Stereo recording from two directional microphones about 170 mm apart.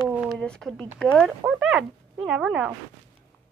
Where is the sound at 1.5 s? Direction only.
5° right (ahead or behind).